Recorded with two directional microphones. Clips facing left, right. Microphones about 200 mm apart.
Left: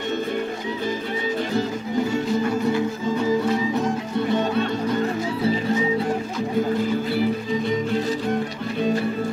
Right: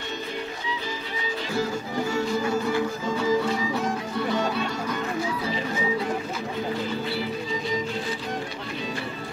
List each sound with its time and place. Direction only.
4.3 s music: 20° left (ahead or behind)